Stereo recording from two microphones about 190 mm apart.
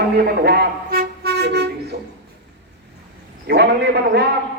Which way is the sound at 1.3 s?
60° right (ahead or behind).